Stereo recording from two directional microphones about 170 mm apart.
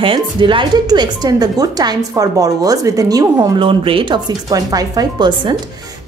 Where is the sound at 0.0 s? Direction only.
30° right (ahead or behind).